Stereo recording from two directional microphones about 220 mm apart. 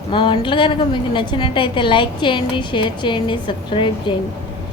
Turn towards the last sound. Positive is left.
turn(degrees=25)  # may be behind; listen again after turning